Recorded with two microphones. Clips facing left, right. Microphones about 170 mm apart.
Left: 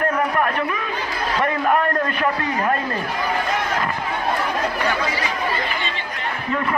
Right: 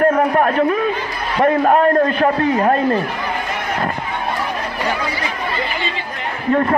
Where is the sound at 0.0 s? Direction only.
45° right (ahead or behind).